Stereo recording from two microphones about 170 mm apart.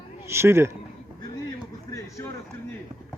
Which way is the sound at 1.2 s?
20° left (ahead or behind).